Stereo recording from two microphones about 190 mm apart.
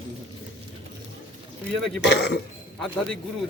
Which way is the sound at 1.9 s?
65° left (ahead or behind).